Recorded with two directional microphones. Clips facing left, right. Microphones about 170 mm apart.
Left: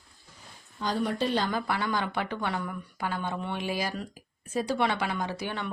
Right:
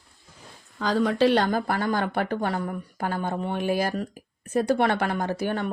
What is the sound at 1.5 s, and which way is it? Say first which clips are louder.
Speech: right 5 dB; 45° right (ahead or behind).